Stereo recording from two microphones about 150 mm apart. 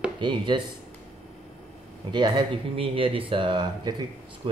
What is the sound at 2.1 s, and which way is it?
Speech, 30° right (ahead or behind).